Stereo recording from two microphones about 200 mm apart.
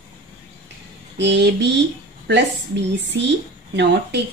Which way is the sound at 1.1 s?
60° right (ahead or behind).